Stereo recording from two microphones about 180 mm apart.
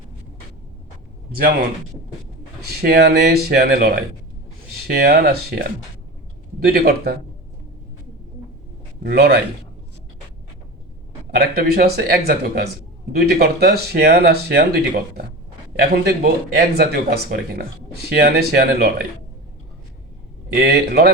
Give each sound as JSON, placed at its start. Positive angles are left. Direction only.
{"t": 2.6, "sound": "speech", "side_deg": -60}
{"t": 9.0, "sound": "speech", "side_deg": -60}
{"t": 11.3, "sound": "speech", "side_deg": -60}
{"t": 20.5, "sound": "speech", "side_deg": -60}